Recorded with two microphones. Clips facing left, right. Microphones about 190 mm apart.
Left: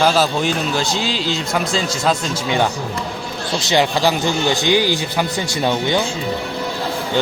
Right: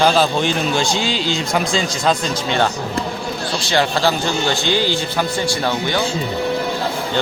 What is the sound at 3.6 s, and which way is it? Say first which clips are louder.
Speech: left 2 dB; 20° left (ahead or behind).